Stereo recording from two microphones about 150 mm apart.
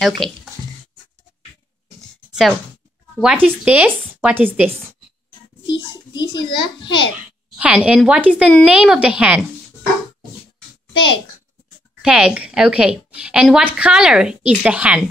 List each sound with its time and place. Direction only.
0.2 s speech: centre (ahead or behind)
2.3 s a woman's voice: centre (ahead or behind)
5.7 s a child's voice: 30° left (ahead or behind)
7.5 s a woman's voice: 10° right (ahead or behind)
12.0 s a woman's voice: 5° right (ahead or behind)